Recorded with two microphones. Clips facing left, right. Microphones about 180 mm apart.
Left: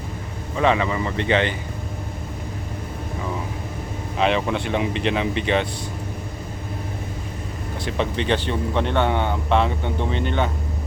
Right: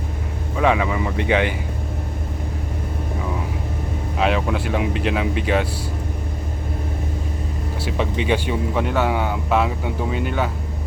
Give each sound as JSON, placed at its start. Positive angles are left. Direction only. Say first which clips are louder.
{"t": 0.5, "sound": "speech", "louder": "right 1 dB", "side_deg": -5}
{"t": 4.2, "sound": "speech", "louder": "even", "side_deg": -5}
{"t": 7.9, "sound": "speech", "louder": "right 1 dB", "side_deg": -5}